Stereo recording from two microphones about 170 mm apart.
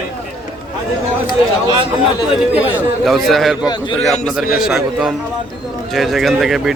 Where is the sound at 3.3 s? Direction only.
Centre (ahead or behind).